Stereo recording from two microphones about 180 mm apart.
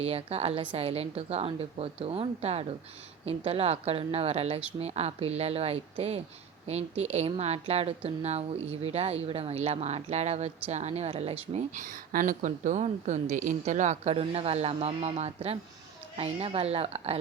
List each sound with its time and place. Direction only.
0.0 s a woman's voice: 35° right (ahead or behind)